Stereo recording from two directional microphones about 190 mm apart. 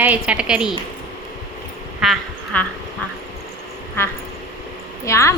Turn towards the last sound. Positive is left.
turn(degrees=15)  # may be behind; listen again after turning